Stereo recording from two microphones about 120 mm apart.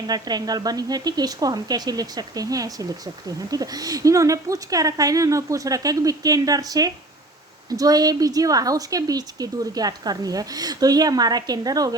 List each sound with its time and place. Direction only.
0.1 s speech: 35° right (ahead or behind)